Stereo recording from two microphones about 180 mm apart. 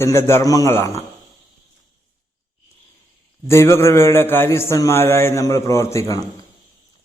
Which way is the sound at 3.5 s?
15° left (ahead or behind).